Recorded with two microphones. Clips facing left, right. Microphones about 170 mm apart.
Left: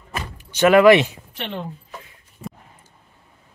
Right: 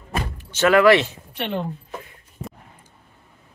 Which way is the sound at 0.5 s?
15° left (ahead or behind).